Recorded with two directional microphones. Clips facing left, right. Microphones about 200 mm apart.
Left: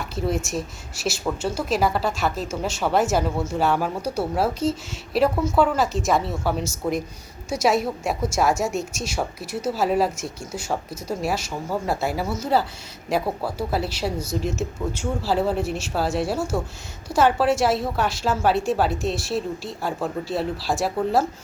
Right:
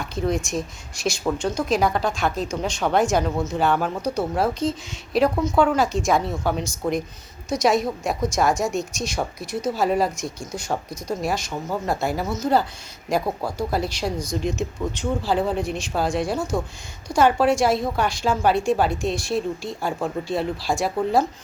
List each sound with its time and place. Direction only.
0.0 s a woman's voice: 5° left (ahead or behind)